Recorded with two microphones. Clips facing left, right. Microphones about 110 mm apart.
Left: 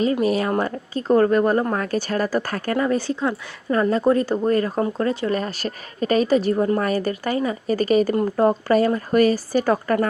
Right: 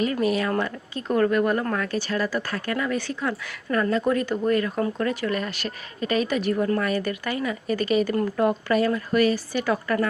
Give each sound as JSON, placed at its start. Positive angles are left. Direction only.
{"t": 0.0, "sound": "speech", "side_deg": 30}